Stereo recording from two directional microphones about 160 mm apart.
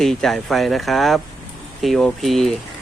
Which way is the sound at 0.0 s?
Centre (ahead or behind).